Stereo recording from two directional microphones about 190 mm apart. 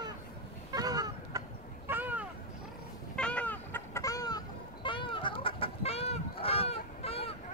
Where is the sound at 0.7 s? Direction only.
20° right (ahead or behind).